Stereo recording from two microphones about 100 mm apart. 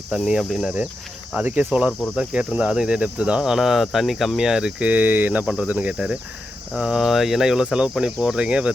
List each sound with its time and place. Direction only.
0.1 s cricket: 5° right (ahead or behind)